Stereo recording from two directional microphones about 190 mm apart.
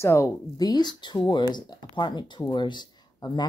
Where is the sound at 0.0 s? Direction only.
15° left (ahead or behind).